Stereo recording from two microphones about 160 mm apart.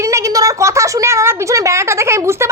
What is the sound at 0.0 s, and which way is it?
A woman's voice, 20° right (ahead or behind).